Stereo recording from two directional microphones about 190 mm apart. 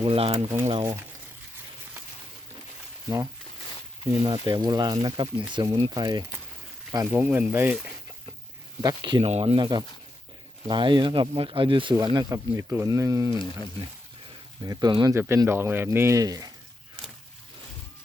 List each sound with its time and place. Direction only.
0.0 s speech: 30° right (ahead or behind)
4.1 s speech: 20° right (ahead or behind)
8.8 s speech: 20° right (ahead or behind)
14.6 s speech: 20° right (ahead or behind)